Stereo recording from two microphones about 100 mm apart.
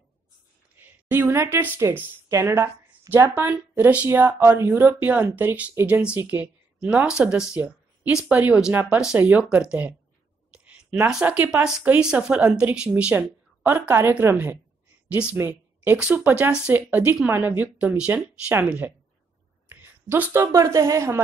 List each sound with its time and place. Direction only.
0.8 s a woman's voice: 20° right (ahead or behind)
4.4 s speech: 25° right (ahead or behind)
10.5 s a sound: 15° right (ahead or behind)
11.1 s speech: 10° right (ahead or behind)
19.7 s a sound: 20° right (ahead or behind)
20.5 s speech: 30° right (ahead or behind)